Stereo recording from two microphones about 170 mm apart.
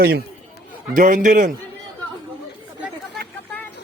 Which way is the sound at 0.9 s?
50° right (ahead or behind).